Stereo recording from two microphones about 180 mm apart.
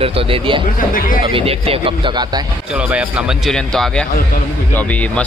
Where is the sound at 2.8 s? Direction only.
5° right (ahead or behind); by 5.1 s 10° left (ahead or behind).